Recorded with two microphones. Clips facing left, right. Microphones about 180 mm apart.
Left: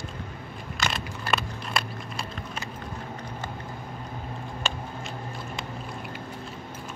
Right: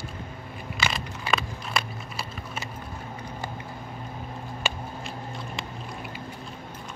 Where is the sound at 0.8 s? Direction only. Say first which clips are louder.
Even; 5° right (ahead or behind).